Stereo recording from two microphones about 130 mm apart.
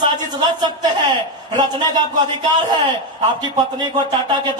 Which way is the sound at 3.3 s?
35° right (ahead or behind).